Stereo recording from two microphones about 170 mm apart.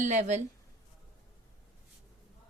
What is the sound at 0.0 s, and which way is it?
Speech, 45° right (ahead or behind).